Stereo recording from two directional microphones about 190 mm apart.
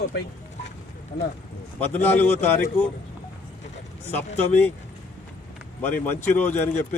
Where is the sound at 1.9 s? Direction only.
10° left (ahead or behind).